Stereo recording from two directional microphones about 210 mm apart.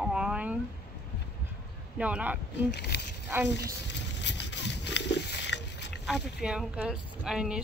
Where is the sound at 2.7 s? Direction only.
55° left (ahead or behind).